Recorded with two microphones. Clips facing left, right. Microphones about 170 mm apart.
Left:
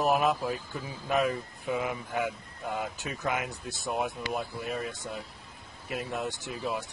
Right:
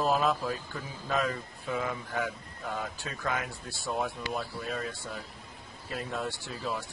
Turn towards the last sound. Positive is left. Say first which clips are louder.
# left 2 dB
turn(degrees=20)  # may be behind; listen again after turning